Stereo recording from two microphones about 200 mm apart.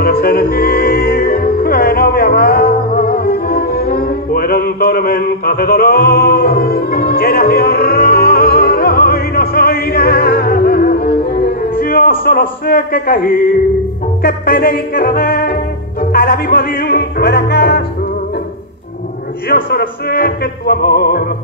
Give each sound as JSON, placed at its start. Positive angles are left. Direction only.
{"t": 0.0, "sound": "music", "side_deg": 50}
{"t": 19.5, "sound": "music", "side_deg": 50}